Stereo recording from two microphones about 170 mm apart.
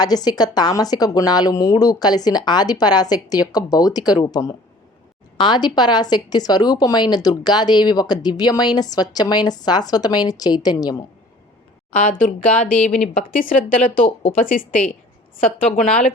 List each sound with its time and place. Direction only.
0.0 s speech: 25° left (ahead or behind)
12.2 s speech: 55° left (ahead or behind)